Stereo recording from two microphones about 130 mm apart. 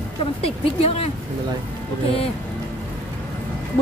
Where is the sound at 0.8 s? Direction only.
50° left (ahead or behind).